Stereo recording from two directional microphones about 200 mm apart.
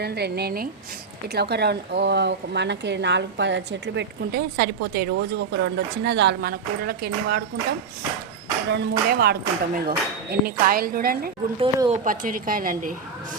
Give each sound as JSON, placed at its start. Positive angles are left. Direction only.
{"t": 0.0, "sound": "speech", "side_deg": -55}
{"t": 8.7, "sound": "speech", "side_deg": -50}
{"t": 11.6, "sound": "speech", "side_deg": -25}
{"t": 12.0, "sound": "speech", "side_deg": -45}